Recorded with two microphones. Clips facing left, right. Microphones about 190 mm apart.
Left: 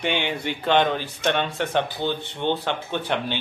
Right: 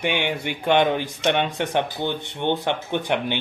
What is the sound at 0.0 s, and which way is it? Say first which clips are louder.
Speech: right 1 dB; 10° right (ahead or behind).